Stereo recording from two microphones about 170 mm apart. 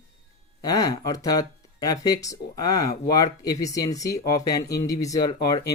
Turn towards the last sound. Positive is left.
turn(degrees=25)  # may be behind; listen again after turning